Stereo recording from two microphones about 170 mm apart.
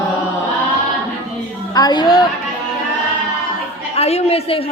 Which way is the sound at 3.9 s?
35° left (ahead or behind).